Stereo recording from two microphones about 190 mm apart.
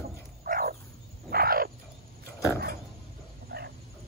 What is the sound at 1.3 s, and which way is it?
Wild animals, 50° right (ahead or behind).